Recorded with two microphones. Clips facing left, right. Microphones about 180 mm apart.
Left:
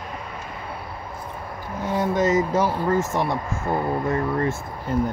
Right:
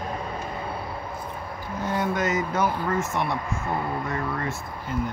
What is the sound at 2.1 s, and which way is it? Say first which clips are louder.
Speech: left 5 dB; 45° left (ahead or behind).